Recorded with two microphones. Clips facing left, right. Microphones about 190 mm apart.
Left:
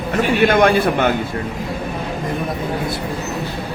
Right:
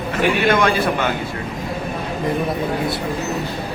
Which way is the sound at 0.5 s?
55° left (ahead or behind).